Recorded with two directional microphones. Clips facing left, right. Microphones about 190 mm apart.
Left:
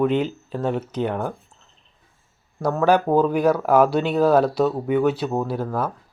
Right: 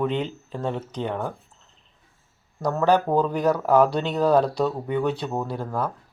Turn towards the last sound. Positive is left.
turn(degrees=5)  # may be behind; listen again after turning